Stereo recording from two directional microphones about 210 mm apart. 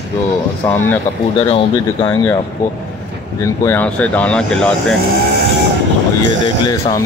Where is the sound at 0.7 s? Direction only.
10° left (ahead or behind).